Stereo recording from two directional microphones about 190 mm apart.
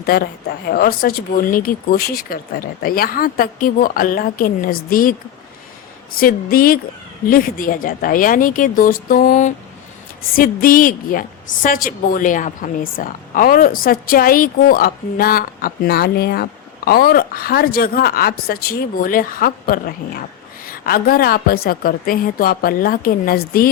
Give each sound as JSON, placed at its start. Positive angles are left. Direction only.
{"t": 0.0, "sound": "a woman's voice", "side_deg": 55}
{"t": 6.1, "sound": "a woman's voice", "side_deg": 50}